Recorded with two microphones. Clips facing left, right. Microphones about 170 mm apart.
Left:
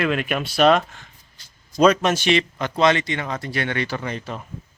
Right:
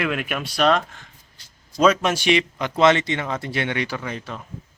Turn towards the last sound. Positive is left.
turn(degrees=0)  # may be behind; listen again after turning